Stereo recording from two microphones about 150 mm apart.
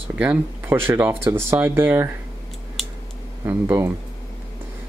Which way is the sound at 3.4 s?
15° right (ahead or behind).